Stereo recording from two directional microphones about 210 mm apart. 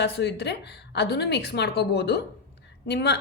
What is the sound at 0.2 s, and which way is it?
A woman's voice, 55° left (ahead or behind).